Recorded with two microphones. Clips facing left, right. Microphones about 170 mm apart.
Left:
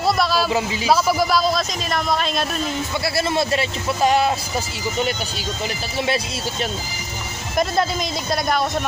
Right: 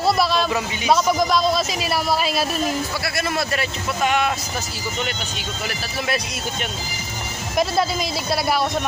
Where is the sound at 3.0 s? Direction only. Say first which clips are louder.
Left 3 dB; 25° left (ahead or behind).